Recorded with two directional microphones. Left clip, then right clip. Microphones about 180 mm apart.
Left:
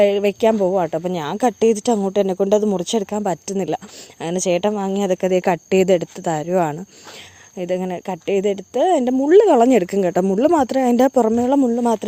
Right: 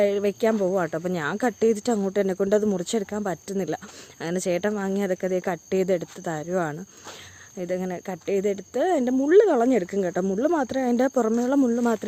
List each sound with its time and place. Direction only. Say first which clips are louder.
0.0 s speech: left 7 dB; 30° left (ahead or behind)
0.6 s speech: left 6 dB; 15° left (ahead or behind)